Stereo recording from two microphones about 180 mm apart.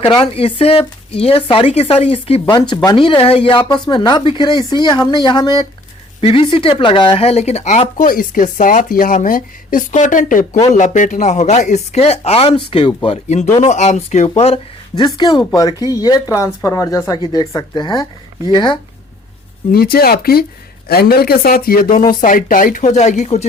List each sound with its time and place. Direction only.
0.0 s speech: 30° left (ahead or behind)
15.0 s speech: 25° left (ahead or behind)
19.7 s speech: 55° left (ahead or behind); by 23.5 s 40° left (ahead or behind)